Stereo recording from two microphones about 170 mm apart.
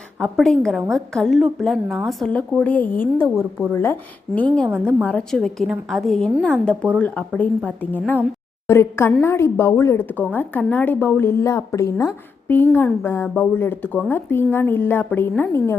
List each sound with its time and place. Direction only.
0.2 s a woman's voice: centre (ahead or behind)
4.3 s a woman's voice: centre (ahead or behind); by 15.8 s 15° left (ahead or behind)